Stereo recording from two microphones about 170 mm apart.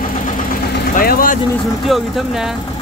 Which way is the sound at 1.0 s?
55° left (ahead or behind).